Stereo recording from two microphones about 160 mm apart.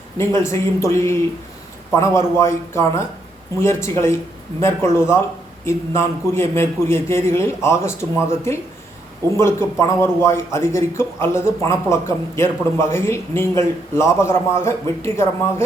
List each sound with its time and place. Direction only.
0.2 s a man's voice: 15° left (ahead or behind)